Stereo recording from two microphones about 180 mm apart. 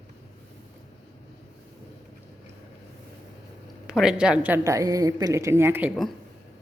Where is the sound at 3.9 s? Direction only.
5° right (ahead or behind).